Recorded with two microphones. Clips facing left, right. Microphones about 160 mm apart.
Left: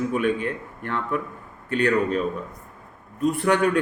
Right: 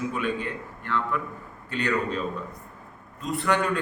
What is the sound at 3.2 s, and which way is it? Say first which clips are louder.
Speech: left 5 dB; 65° left (ahead or behind).